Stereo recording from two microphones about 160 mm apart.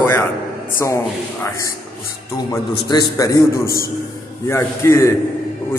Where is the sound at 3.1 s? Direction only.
20° left (ahead or behind).